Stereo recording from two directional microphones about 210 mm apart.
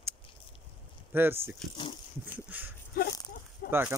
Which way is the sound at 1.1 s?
10° right (ahead or behind).